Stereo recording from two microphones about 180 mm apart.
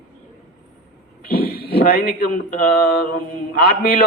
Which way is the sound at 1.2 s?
60° left (ahead or behind).